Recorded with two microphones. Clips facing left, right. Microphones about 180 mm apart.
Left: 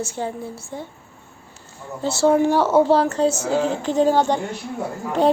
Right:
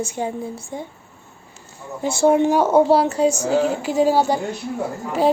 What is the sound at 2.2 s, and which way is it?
A woman's voice, 15° right (ahead or behind).